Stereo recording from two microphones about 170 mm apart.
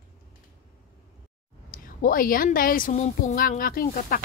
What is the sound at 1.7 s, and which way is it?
A woman's voice, 55° left (ahead or behind).